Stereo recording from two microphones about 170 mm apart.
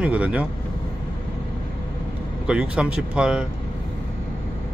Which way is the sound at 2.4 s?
5° right (ahead or behind).